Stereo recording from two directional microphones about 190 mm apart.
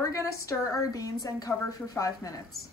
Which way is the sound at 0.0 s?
15° left (ahead or behind).